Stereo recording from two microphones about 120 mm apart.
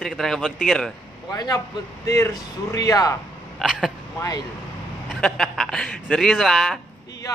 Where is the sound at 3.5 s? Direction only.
5° right (ahead or behind).